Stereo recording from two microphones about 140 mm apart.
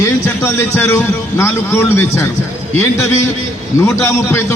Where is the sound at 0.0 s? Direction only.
20° left (ahead or behind).